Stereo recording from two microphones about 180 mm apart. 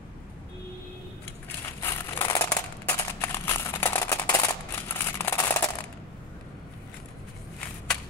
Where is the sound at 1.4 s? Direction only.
15° left (ahead or behind).